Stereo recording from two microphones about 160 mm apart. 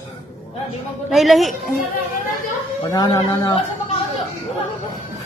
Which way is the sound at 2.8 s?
25° left (ahead or behind).